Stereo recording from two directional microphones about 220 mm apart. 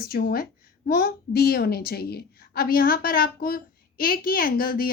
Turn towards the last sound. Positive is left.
turn(degrees=40)  # may be behind; listen again after turning